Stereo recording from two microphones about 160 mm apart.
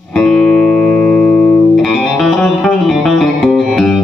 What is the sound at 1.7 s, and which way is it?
Music, centre (ahead or behind).